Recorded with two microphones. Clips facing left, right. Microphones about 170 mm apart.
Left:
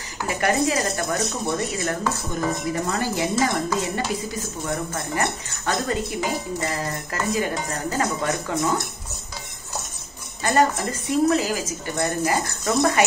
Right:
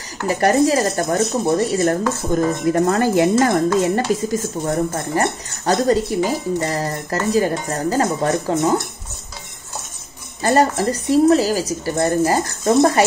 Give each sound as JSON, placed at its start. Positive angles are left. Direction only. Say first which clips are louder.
{"t": 0.3, "sound": "speech", "louder": "right 7 dB", "side_deg": -40}
{"t": 10.4, "sound": "speech", "louder": "right 4 dB", "side_deg": -35}